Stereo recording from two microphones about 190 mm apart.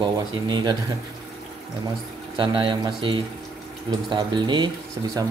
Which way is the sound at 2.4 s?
25° right (ahead or behind).